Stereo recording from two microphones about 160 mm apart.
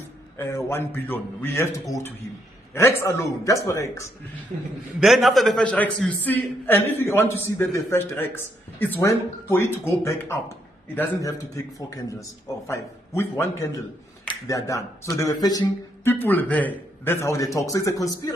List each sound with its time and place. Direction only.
0.4 s a man's voice: 15° left (ahead or behind)
5.0 s a man's voice: centre (ahead or behind); by 11.3 s 20° left (ahead or behind)
12.6 s a man's voice: 15° left (ahead or behind)